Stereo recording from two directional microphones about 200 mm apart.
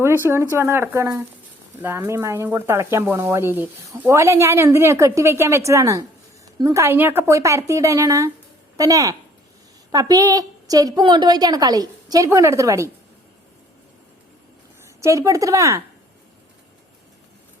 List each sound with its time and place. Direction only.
0.0 s a woman's voice: 10° right (ahead or behind)
14.8 s speech: 15° right (ahead or behind)